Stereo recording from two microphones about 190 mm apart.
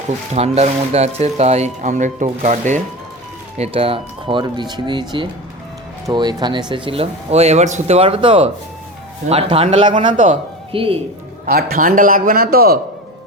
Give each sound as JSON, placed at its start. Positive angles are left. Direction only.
{"t": 0.3, "sound": "speech", "side_deg": -35}
{"t": 11.4, "sound": "a man's voice", "side_deg": -50}